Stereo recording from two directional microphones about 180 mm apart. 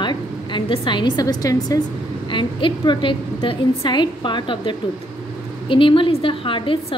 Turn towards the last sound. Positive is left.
turn(degrees=30)  # may be behind; listen again after turning